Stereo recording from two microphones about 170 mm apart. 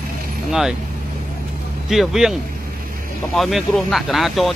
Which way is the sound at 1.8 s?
Centre (ahead or behind).